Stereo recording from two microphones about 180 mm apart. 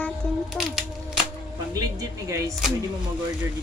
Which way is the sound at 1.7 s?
15° right (ahead or behind).